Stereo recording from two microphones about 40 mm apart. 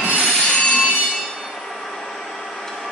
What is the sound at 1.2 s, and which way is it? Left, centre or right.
Train, centre.